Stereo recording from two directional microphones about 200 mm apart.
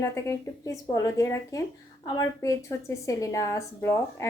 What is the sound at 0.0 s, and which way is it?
A woman's voice, 15° left (ahead or behind).